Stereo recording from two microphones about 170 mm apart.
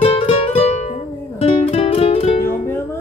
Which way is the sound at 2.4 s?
15° left (ahead or behind).